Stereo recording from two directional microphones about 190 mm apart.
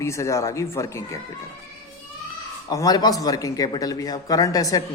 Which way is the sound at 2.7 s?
20° left (ahead or behind).